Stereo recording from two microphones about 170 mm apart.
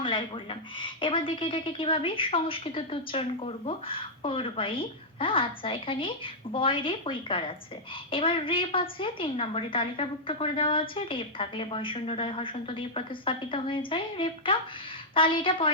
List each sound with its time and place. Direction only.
0.0 s a woman's voice: 30° left (ahead or behind)